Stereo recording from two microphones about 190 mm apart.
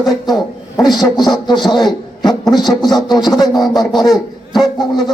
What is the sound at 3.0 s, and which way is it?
Speech, 20° left (ahead or behind).